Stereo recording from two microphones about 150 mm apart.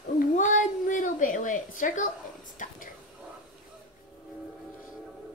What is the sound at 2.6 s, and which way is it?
Whispering, 55° left (ahead or behind).